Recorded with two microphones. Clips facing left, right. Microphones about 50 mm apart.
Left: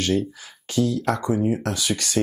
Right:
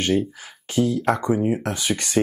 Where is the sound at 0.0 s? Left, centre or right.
Right.